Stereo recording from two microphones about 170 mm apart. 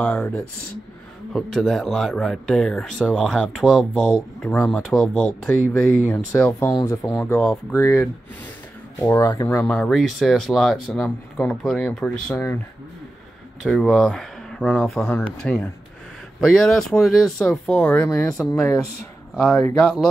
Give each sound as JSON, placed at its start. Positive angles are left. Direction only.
{"t": 0.0, "sound": "speech", "side_deg": 10}
{"t": 5.7, "sound": "speech", "side_deg": 15}
{"t": 13.6, "sound": "speech", "side_deg": 0}
{"t": 18.0, "sound": "speech", "side_deg": 15}
{"t": 19.3, "sound": "speech", "side_deg": 5}